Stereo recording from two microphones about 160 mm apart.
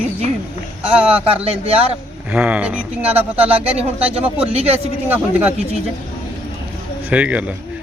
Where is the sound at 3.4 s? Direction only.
40° right (ahead or behind).